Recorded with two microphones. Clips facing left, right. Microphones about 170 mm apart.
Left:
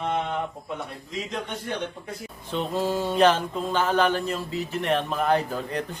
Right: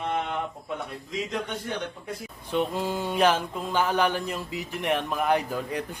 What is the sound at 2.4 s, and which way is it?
Mantra, 10° right (ahead or behind).